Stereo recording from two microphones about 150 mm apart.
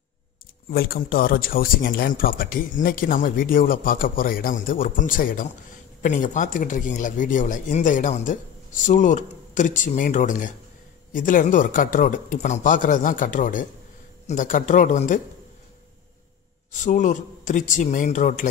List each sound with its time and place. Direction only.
0.7 s speech: 80° left; by 15.1 s 60° left (ahead or behind)
16.7 s speech: 55° left (ahead or behind)